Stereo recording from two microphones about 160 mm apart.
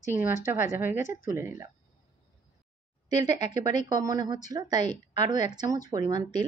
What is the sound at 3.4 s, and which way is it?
Speech, 50° left (ahead or behind).